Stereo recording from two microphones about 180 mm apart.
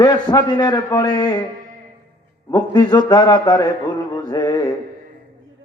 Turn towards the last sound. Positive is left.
turn(degrees=25)  # may be behind; listen again after turning